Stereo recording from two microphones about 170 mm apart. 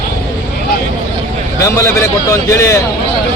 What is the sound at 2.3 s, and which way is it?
Speech, 15° left (ahead or behind).